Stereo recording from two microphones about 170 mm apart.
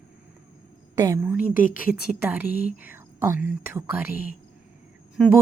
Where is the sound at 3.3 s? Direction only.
60° left (ahead or behind).